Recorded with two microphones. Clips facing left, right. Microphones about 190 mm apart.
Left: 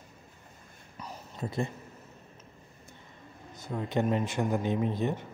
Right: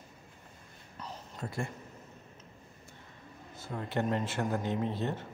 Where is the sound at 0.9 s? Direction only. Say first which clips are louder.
Left 1 dB; 10° left (ahead or behind).